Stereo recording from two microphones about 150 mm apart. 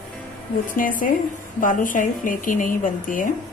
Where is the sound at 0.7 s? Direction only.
65° left (ahead or behind).